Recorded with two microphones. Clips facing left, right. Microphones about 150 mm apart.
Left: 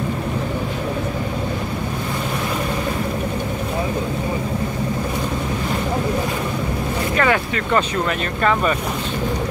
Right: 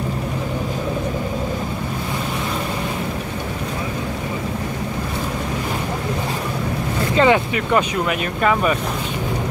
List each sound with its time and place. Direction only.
7.2 s vehicle: 20° right (ahead or behind)